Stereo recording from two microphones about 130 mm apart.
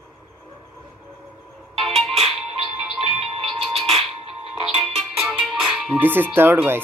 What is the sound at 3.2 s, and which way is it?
Music, 45° right (ahead or behind).